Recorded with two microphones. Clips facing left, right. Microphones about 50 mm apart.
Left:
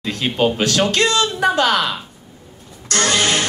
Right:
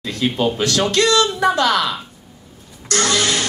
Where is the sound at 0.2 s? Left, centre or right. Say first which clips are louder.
Even; left.